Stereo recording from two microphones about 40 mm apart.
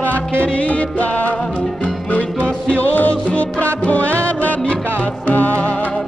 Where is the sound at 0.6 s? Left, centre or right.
Left.